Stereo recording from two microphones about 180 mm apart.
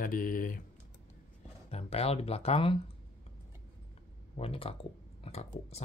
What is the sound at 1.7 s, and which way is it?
Speech, 35° left (ahead or behind).